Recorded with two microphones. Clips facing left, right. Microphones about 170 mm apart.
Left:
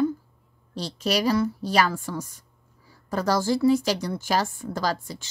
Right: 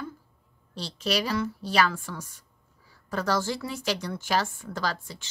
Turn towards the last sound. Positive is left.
turn(degrees=40)  # may be behind; listen again after turning